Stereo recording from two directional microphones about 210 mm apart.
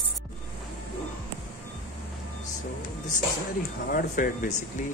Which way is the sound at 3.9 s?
40° left (ahead or behind).